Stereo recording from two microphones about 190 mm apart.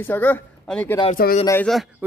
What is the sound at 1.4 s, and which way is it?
Speech, 15° left (ahead or behind).